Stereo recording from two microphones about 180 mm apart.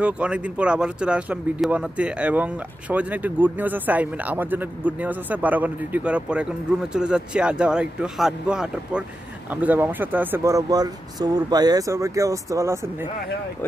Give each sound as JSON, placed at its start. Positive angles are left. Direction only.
{"t": 0.0, "sound": "speech", "side_deg": -5}